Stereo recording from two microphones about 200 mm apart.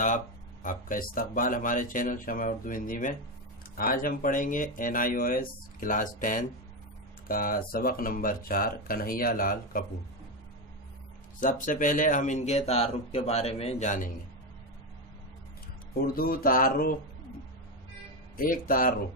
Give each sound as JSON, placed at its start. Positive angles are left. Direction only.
{"t": 0.0, "sound": "speech", "side_deg": 40}
{"t": 11.3, "sound": "speech", "side_deg": 40}
{"t": 16.0, "sound": "speech", "side_deg": 45}
{"t": 18.3, "sound": "speech", "side_deg": 45}